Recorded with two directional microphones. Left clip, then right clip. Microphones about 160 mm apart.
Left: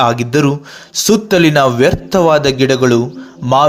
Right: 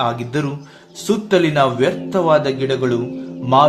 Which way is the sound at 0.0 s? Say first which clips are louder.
Left 8 dB; 35° left (ahead or behind).